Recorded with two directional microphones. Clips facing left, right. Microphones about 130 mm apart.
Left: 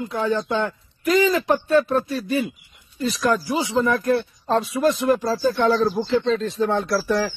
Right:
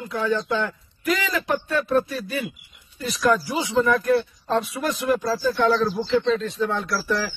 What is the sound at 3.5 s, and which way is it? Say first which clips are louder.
Speech: even; 30° left (ahead or behind).